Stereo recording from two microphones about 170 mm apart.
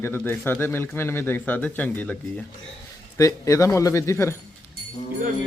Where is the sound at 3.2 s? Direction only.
20° left (ahead or behind).